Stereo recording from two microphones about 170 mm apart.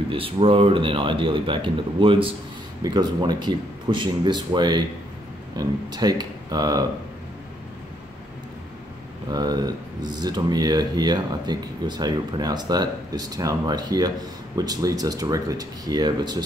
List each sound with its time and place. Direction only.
0.1 s speech: 30° right (ahead or behind)
9.3 s speech: 25° right (ahead or behind)